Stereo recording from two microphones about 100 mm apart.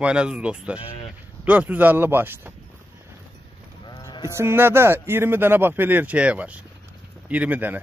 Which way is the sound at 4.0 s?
45° left (ahead or behind).